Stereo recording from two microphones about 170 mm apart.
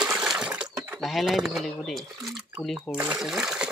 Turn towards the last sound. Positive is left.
turn(degrees=-5)  # may be behind; listen again after turning